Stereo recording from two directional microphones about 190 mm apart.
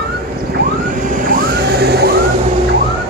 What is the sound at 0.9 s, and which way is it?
Vehicle, 45° right (ahead or behind).